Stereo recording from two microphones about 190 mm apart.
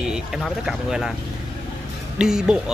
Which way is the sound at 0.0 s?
5° right (ahead or behind).